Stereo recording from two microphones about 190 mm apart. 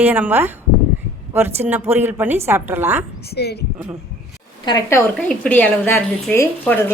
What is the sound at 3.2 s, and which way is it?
Speech, 60° left (ahead or behind).